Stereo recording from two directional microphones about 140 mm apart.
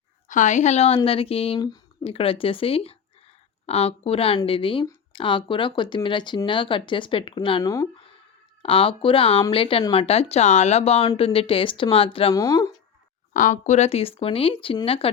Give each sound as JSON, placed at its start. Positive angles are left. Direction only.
{"t": 0.3, "sound": "speech", "side_deg": 65}
{"t": 1.5, "sound": "speech", "side_deg": 30}
{"t": 2.0, "sound": "speech", "side_deg": 40}
{"t": 7.6, "sound": "speech", "side_deg": 25}
{"t": 8.6, "sound": "speech", "side_deg": 40}
{"t": 12.3, "sound": "speech", "side_deg": 25}
{"t": 13.3, "sound": "speech", "side_deg": 65}